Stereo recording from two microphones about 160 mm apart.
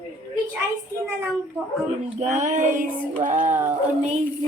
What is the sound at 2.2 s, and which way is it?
Child singing, 50° right (ahead or behind).